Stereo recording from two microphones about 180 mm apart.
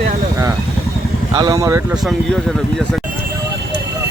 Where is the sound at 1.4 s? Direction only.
20° right (ahead or behind).